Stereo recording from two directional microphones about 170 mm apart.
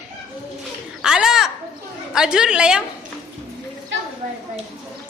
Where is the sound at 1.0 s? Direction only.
5° right (ahead or behind).